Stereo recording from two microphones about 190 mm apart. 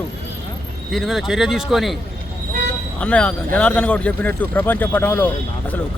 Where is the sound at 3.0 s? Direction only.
5° left (ahead or behind).